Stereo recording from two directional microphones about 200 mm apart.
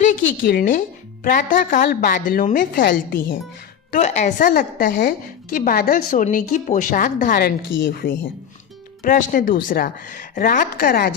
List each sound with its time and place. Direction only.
0.0 s a woman's voice: 40° left (ahead or behind)
3.9 s a woman's voice: 35° left (ahead or behind)